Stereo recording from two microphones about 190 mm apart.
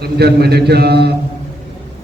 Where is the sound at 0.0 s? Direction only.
60° right (ahead or behind).